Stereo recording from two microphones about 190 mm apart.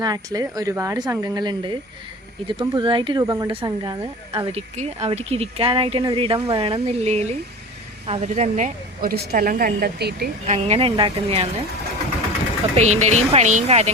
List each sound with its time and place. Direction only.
0.0 s speech: 20° right (ahead or behind)
4.3 s a woman's voice: 35° right (ahead or behind); by 10.2 s 55° right (ahead or behind)
10.4 s speech: 35° right (ahead or behind)
12.7 s speech: 35° right (ahead or behind)